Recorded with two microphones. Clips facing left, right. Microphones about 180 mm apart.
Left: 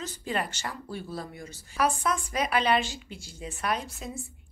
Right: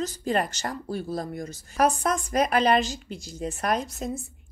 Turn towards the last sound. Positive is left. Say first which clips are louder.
# right 5 dB
turn(degrees=-45)  # may be behind; listen again after turning